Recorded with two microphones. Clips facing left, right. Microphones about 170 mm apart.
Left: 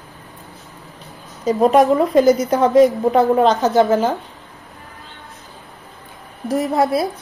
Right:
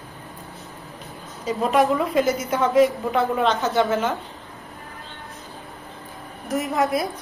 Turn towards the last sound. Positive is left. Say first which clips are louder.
# left 5 dB
turn(degrees=35)  # may be behind; listen again after turning